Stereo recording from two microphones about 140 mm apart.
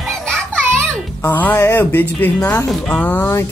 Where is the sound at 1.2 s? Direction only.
15° left (ahead or behind).